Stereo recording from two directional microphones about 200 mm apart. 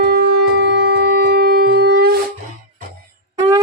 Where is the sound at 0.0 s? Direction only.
50° right (ahead or behind).